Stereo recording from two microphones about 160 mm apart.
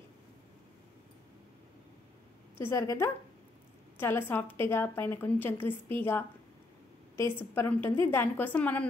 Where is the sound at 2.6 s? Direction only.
15° left (ahead or behind).